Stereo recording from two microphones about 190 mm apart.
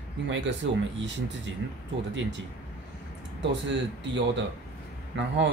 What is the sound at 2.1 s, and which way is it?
Speech, 70° right (ahead or behind).